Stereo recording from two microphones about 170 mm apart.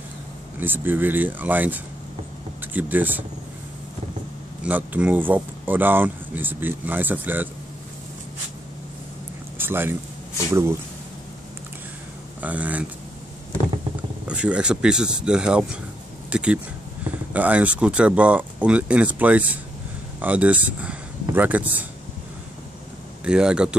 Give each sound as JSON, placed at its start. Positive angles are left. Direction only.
{"t": 0.6, "sound": "speech", "side_deg": -10}
{"t": 4.6, "sound": "speech", "side_deg": -10}
{"t": 9.6, "sound": "speech", "side_deg": -15}
{"t": 12.4, "sound": "speech", "side_deg": -10}
{"t": 14.2, "sound": "speech", "side_deg": -5}
{"t": 23.2, "sound": "speech", "side_deg": -5}